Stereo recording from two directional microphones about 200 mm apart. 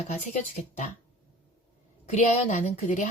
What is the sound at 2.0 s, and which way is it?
Speech, 35° left (ahead or behind).